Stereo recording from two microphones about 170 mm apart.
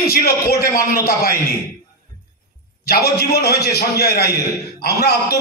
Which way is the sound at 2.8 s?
70° left (ahead or behind).